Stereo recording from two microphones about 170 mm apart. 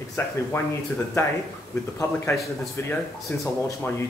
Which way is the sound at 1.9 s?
15° left (ahead or behind).